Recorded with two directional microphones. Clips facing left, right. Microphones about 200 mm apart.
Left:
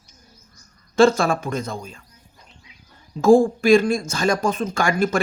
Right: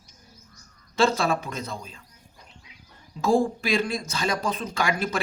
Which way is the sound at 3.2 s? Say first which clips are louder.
Left 8 dB; 50° left (ahead or behind).